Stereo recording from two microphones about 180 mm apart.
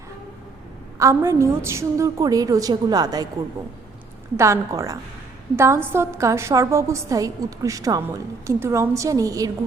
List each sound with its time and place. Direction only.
0.9 s a woman's voice: 15° right (ahead or behind)
4.4 s a woman's voice: 15° right (ahead or behind)